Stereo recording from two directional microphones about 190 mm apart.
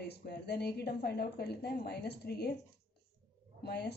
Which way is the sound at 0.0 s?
60° left (ahead or behind).